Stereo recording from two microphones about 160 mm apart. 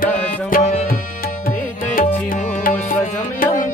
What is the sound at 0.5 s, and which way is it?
Tabla, 45° left (ahead or behind).